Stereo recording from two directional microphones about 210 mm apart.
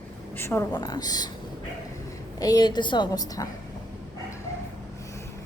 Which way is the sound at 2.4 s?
20° left (ahead or behind).